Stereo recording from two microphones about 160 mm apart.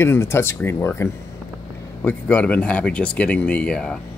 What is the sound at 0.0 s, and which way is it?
Speech, 15° left (ahead or behind).